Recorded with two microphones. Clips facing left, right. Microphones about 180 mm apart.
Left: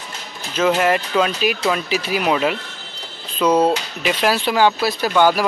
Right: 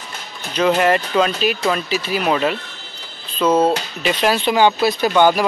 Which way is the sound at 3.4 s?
5° right (ahead or behind).